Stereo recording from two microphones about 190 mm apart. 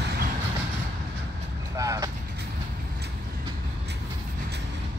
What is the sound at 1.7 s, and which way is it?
Vehicle, 15° right (ahead or behind).